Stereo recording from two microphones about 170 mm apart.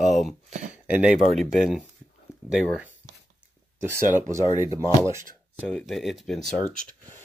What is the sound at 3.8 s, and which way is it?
Speech, 15° right (ahead or behind).